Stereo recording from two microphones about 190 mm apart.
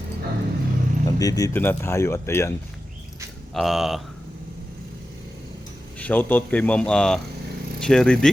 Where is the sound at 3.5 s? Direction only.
Centre (ahead or behind).